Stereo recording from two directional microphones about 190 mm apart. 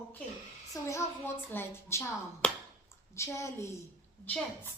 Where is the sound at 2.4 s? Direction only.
5° left (ahead or behind).